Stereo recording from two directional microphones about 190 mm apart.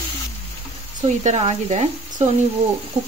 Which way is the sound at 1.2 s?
35° right (ahead or behind).